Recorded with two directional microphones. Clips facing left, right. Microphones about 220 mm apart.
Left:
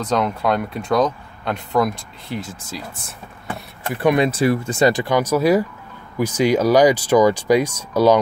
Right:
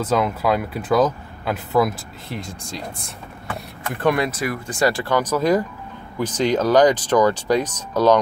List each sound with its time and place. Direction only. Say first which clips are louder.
0.0 s speech: even; 5° right (ahead or behind)
4.1 s speech: left 7 dB; 25° left (ahead or behind); by 8.2 s 10° left (ahead or behind)